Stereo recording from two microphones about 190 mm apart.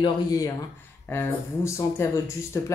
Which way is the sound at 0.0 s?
20° left (ahead or behind).